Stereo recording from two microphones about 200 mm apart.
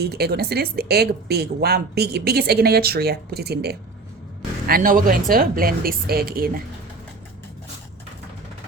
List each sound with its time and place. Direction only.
0.0 s speech: 55° right (ahead or behind)